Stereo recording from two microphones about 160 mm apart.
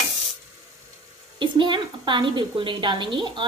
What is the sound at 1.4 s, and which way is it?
A woman's voice, 30° right (ahead or behind).